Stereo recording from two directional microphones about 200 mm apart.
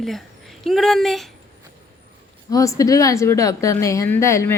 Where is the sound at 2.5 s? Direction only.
15° left (ahead or behind).